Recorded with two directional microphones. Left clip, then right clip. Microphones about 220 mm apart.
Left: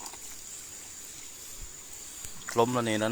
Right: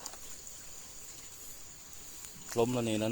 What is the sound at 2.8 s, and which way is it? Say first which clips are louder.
Speech: left 5 dB; 15° right (ahead or behind).